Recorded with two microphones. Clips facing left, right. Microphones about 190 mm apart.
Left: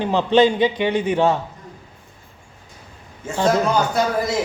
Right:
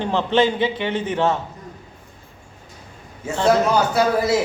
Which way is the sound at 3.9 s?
5° right (ahead or behind).